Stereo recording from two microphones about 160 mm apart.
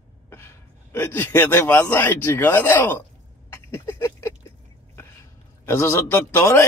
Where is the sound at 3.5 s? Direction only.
15° left (ahead or behind).